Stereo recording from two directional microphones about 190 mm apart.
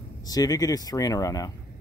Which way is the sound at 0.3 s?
20° left (ahead or behind).